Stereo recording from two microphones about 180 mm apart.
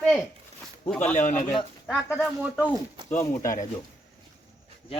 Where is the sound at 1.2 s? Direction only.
45° left (ahead or behind).